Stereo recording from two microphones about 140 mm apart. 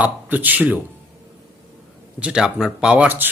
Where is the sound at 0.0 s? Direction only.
10° right (ahead or behind).